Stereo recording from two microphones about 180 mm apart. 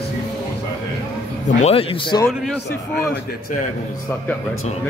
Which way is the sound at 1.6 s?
35° left (ahead or behind).